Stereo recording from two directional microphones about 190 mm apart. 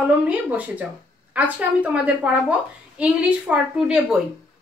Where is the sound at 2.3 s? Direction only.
5° right (ahead or behind).